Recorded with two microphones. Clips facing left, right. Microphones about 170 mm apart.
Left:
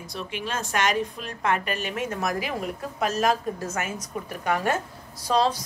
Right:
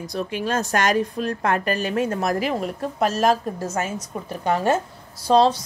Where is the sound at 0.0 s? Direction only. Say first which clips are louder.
Right 7 dB; 40° right (ahead or behind).